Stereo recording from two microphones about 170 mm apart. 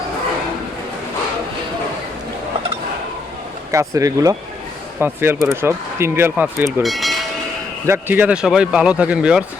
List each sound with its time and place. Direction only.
3.7 s speech: 20° right (ahead or behind)
6.8 s train: centre (ahead or behind)
7.9 s speech: 10° right (ahead or behind)